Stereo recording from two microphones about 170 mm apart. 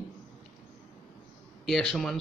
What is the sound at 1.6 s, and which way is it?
Speech, centre (ahead or behind).